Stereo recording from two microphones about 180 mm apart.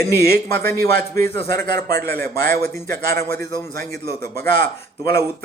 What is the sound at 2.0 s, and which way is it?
A man's voice, 10° left (ahead or behind).